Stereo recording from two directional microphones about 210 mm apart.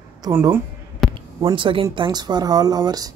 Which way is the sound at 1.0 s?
Centre (ahead or behind).